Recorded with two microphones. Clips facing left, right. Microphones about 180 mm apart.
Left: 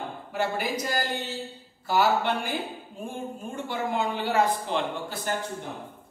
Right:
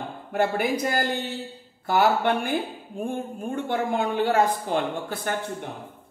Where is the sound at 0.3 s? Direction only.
55° right (ahead or behind).